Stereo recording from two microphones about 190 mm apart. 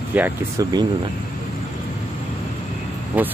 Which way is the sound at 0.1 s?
10° right (ahead or behind).